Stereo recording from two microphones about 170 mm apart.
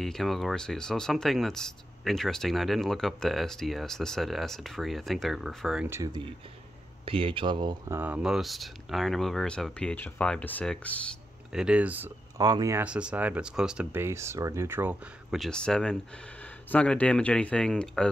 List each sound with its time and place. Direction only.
0.0 s speech: centre (ahead or behind)
5.9 s speech: 20° right (ahead or behind)
7.9 s speech: 10° right (ahead or behind); by 11.0 s 5° left (ahead or behind)
11.5 s speech: 5° right (ahead or behind)
12.4 s speech: 20° right (ahead or behind)
12.8 s speech: 5° right (ahead or behind)
15.3 s speech: 5° left (ahead or behind)